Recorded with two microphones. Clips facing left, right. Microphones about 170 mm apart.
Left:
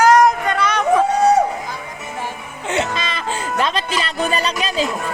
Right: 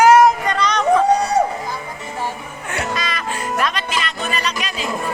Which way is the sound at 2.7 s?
25° left (ahead or behind).